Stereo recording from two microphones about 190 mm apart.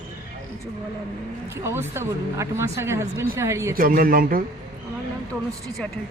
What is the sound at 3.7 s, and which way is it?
Speech, 50° right (ahead or behind).